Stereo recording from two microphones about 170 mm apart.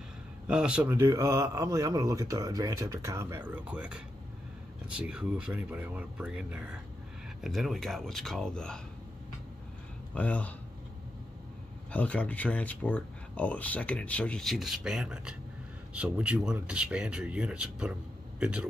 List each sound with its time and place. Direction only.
0.5 s a man's voice: 5° right (ahead or behind)
10.1 s speech: 10° left (ahead or behind)
11.9 s speech: 10° left (ahead or behind); by 18.7 s 5° right (ahead or behind)